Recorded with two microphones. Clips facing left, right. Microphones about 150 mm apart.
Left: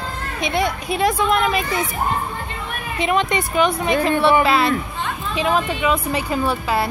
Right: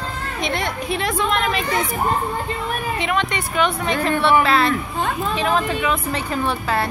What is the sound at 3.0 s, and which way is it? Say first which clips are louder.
A woman's voice: left 7 dB; 15° left (ahead or behind).